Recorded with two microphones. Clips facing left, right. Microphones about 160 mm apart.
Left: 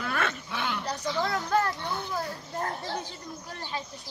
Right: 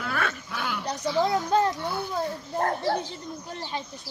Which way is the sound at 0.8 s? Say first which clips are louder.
Right 8 dB; 20° right (ahead or behind).